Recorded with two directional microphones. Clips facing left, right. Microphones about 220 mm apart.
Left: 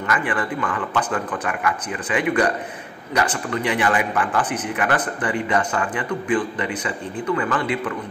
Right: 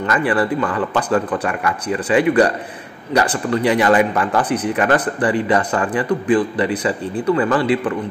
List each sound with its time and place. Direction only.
0.0 s a man's voice: 35° right (ahead or behind)